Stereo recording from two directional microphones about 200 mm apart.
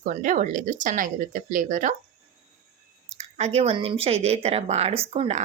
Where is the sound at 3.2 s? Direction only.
35° right (ahead or behind).